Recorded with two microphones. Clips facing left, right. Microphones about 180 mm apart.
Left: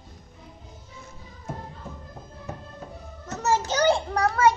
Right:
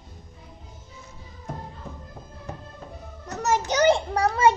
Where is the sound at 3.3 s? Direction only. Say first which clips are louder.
Even; 15° right (ahead or behind).